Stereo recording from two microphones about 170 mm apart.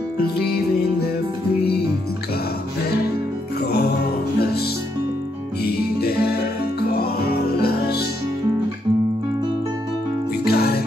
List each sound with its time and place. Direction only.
0.5 s music: 70° left (ahead or behind)
3.6 s music: 70° left (ahead or behind)
10.5 s music: 70° left (ahead or behind)